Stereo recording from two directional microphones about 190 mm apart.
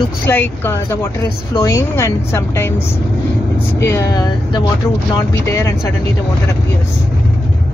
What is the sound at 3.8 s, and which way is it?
Speech, 15° left (ahead or behind).